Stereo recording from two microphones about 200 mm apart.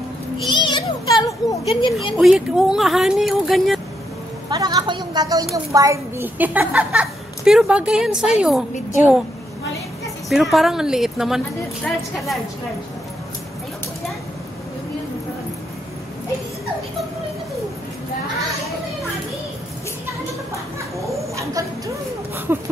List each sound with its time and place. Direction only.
0.5 s children playing: 20° left (ahead or behind)
2.1 s a woman's voice: 5° right (ahead or behind)
4.5 s a woman's voice: 20° right (ahead or behind); by 8.6 s 5° right (ahead or behind)
10.3 s a woman's voice: centre (ahead or behind)
21.4 s a sound: 15° right (ahead or behind)